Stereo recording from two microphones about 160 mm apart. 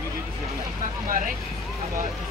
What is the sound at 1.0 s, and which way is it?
Vehicle, 55° right (ahead or behind).